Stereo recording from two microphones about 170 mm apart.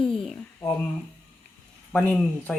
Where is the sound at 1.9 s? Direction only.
10° left (ahead or behind).